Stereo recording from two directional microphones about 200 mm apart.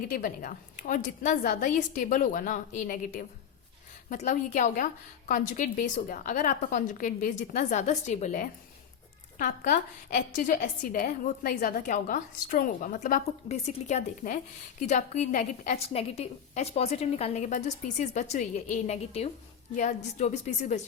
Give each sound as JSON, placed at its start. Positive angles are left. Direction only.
{"t": 0.1, "sound": "a woman's voice", "side_deg": 45}